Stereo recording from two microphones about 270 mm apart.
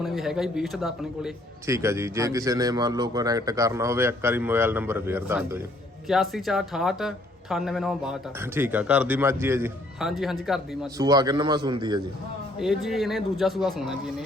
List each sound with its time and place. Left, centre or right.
0.0 s speech: centre
10.9 s speech: centre
12.5 s speech: centre